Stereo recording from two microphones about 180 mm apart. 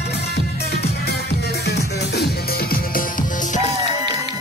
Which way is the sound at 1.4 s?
65° left (ahead or behind).